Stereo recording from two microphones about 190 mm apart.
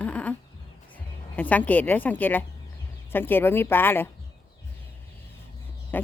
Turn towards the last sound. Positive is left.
turn(degrees=10)  # may be behind; listen again after turning